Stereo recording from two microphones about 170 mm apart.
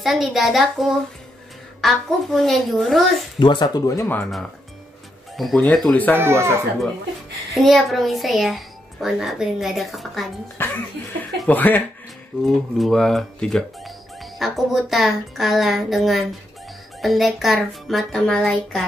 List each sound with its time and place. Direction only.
0.0 s a woman's voice: centre (ahead or behind)
3.3 s speech: 25° left (ahead or behind)
5.4 s a woman's voice: 5° left (ahead or behind)
6.1 s speech: 15° right (ahead or behind)
7.5 s a woman's voice: centre (ahead or behind)
10.6 s music: 10° left (ahead or behind)
11.3 s a woman's voice: 10° left (ahead or behind)